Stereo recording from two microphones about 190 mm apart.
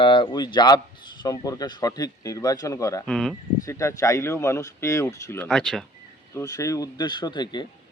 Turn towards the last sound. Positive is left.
turn(degrees=20)  # may be behind; listen again after turning